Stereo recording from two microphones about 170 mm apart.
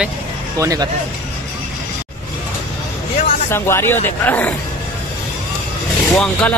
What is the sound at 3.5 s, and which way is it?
Speech, 15° left (ahead or behind).